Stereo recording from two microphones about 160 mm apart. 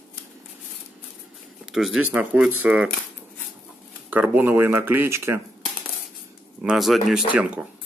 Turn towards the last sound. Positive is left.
turn(degrees=-10)  # may be behind; listen again after turning